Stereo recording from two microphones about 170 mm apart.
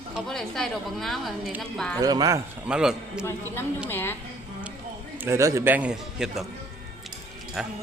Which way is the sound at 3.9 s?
10° left (ahead or behind).